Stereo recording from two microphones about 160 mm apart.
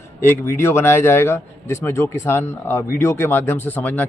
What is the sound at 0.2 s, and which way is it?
A man's voice, 15° left (ahead or behind).